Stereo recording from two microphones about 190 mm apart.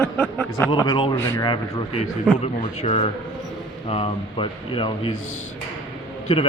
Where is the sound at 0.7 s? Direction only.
25° left (ahead or behind).